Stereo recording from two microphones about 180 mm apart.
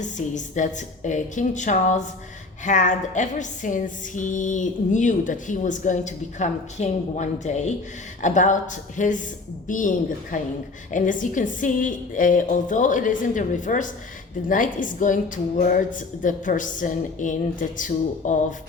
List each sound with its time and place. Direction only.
0.0 s music: 45° left (ahead or behind)